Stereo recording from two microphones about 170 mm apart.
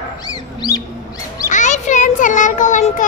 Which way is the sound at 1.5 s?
45° left (ahead or behind).